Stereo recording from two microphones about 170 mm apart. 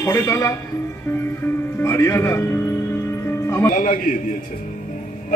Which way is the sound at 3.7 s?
55° left (ahead or behind).